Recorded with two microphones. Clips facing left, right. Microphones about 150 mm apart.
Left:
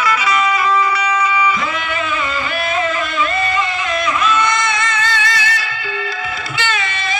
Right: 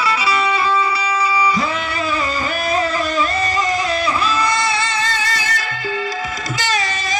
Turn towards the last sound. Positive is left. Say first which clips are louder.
# left 3 dB
turn(degrees=-40)  # may be behind; listen again after turning